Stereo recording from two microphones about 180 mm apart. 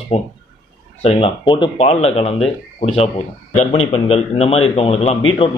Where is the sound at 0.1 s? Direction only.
35° left (ahead or behind).